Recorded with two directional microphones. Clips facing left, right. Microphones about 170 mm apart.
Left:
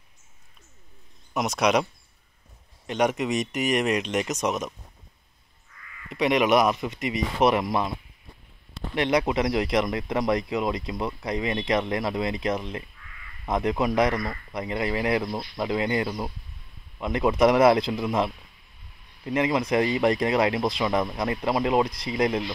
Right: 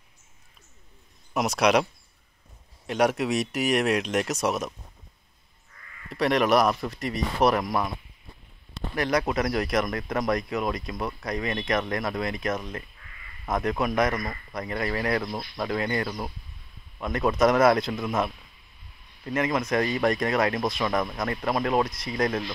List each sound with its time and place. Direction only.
1.3 s speech: centre (ahead or behind)
2.9 s speech: 5° right (ahead or behind)
6.0 s speech: centre (ahead or behind)
7.5 s speech: 25° left (ahead or behind)
8.9 s speech: 20° left (ahead or behind)
19.2 s speech: 20° left (ahead or behind)
20.8 s speech: 15° left (ahead or behind)
21.8 s speech: 30° left (ahead or behind)
22.1 s speech: 20° left (ahead or behind)